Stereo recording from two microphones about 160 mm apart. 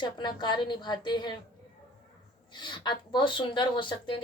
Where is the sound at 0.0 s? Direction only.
30° left (ahead or behind).